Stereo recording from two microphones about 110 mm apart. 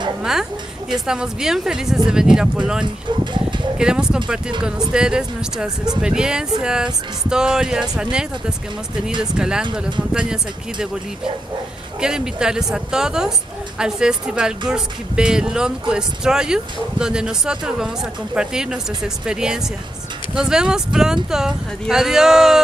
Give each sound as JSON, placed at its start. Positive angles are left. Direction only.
{"t": 0.2, "sound": "a woman's voice", "side_deg": -5}
{"t": 12.0, "sound": "speech", "side_deg": -5}